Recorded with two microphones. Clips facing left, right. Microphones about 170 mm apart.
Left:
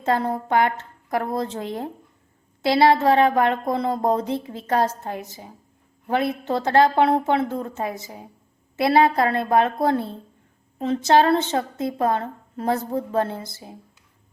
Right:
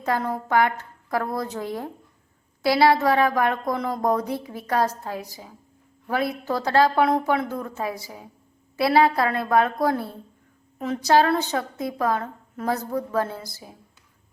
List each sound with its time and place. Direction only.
0.0 s a woman's voice: 25° left (ahead or behind)